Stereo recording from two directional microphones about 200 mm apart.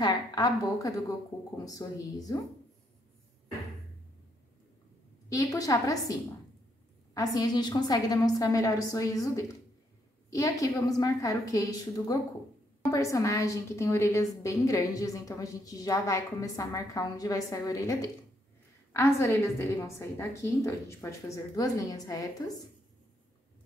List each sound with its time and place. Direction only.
0.0 s a sound: 20° left (ahead or behind)
1.6 s a woman's voice: 15° left (ahead or behind)
5.3 s a woman's voice: 15° left (ahead or behind)
7.2 s a woman's voice: 20° left (ahead or behind)